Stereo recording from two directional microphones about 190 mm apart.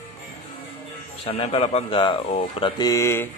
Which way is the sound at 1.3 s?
30° left (ahead or behind).